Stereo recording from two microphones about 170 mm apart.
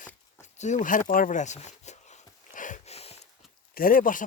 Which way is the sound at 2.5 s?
50° left (ahead or behind).